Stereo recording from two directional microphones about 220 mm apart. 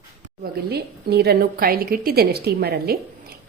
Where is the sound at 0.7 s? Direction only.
45° right (ahead or behind).